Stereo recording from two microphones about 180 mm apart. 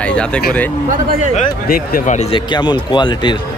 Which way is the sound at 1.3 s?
50° left (ahead or behind).